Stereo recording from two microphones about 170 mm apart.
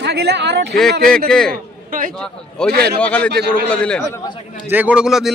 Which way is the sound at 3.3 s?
75° right (ahead or behind).